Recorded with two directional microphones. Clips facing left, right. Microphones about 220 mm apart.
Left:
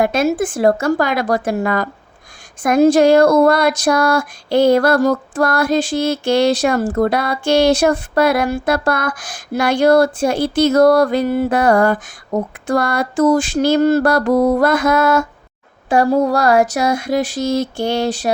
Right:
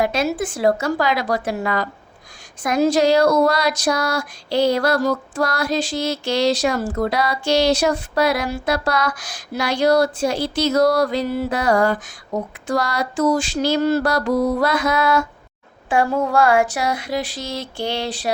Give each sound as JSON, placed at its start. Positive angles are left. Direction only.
{"t": 0.0, "sound": "speech", "side_deg": 50}